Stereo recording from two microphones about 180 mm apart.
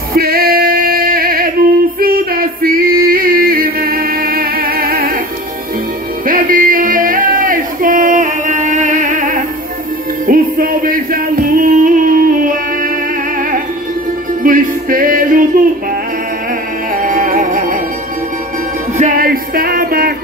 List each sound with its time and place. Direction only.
0.1 s music: 55° right (ahead or behind)
6.2 s music: 50° right (ahead or behind)
14.4 s music: 50° right (ahead or behind)
16.9 s music: 50° right (ahead or behind)
18.9 s music: 50° right (ahead or behind)